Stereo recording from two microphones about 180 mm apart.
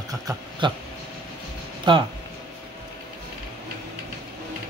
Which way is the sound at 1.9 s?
25° right (ahead or behind).